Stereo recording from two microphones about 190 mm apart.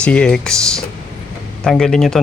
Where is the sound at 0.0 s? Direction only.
5° left (ahead or behind).